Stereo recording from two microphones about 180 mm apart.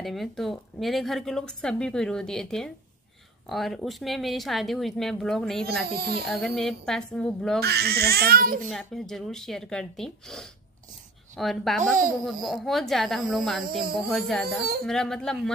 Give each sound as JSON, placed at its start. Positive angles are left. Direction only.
{"t": 0.0, "sound": "speech", "side_deg": 0}
{"t": 5.9, "sound": "speech", "side_deg": -60}
{"t": 6.2, "sound": "speech", "side_deg": 0}
{"t": 7.6, "sound": "speech", "side_deg": -65}
{"t": 8.6, "sound": "speech", "side_deg": 0}